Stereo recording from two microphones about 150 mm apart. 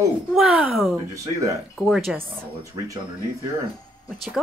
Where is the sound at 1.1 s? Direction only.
20° right (ahead or behind).